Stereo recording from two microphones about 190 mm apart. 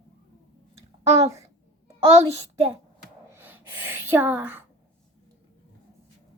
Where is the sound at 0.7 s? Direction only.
35° right (ahead or behind).